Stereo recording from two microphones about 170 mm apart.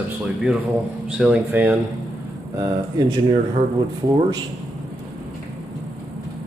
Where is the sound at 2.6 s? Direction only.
25° right (ahead or behind).